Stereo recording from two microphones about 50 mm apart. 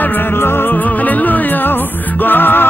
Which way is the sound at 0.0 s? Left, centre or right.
Left.